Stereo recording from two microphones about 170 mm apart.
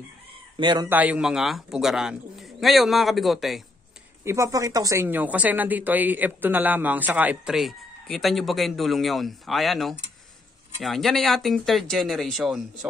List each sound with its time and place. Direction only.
0.6 s speech: 25° right (ahead or behind)
0.8 s speech: 10° right (ahead or behind)
4.2 s speech: 15° right (ahead or behind)